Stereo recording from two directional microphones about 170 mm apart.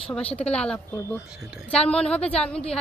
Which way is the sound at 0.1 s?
5° left (ahead or behind).